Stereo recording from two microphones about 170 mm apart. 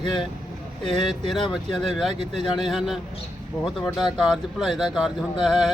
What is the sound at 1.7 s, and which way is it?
Speech, centre (ahead or behind).